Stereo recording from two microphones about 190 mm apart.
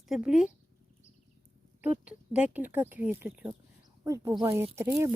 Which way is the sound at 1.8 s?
5° right (ahead or behind).